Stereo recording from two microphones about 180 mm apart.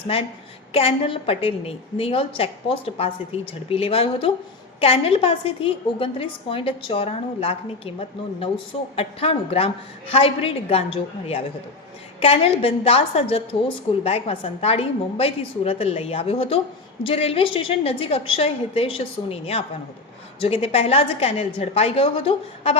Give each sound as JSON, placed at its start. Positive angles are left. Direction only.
{"t": 0.7, "sound": "a woman's voice", "side_deg": 30}